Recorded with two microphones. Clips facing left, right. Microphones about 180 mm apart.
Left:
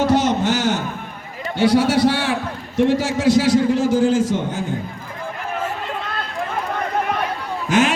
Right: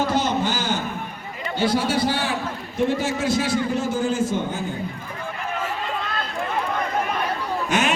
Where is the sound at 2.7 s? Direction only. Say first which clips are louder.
Left 5 dB; 90° left.